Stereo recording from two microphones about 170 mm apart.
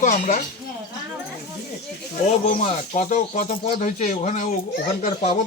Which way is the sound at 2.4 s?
45° left (ahead or behind).